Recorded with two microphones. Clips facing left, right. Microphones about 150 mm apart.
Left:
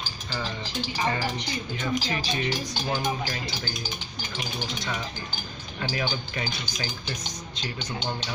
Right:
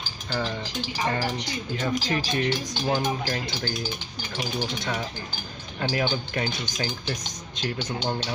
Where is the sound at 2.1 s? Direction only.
55° right (ahead or behind).